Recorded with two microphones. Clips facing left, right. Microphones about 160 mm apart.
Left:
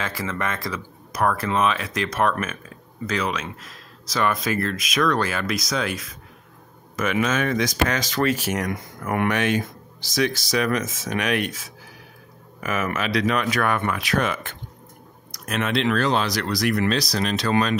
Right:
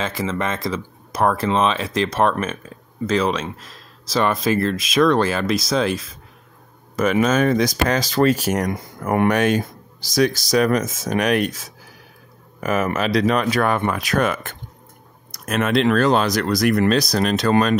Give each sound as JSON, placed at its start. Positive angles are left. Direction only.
{"t": 0.0, "sound": "speech", "side_deg": -20}
{"t": 14.0, "sound": "speech", "side_deg": -45}